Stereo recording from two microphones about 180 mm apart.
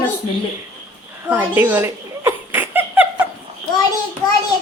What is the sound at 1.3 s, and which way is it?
Giggle, 10° right (ahead or behind).